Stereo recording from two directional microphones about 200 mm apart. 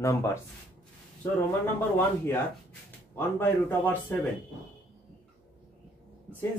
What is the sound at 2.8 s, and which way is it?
Speech, 10° left (ahead or behind).